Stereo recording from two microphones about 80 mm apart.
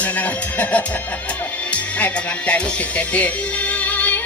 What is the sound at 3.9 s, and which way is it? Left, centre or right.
Music, centre.